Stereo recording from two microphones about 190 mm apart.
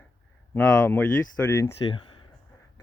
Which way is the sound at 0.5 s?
10° left (ahead or behind).